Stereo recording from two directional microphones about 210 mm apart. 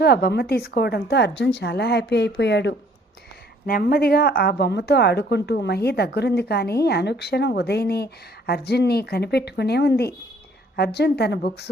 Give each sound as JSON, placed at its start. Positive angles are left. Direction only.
{"t": 0.0, "sound": "a woman's voice", "side_deg": 45}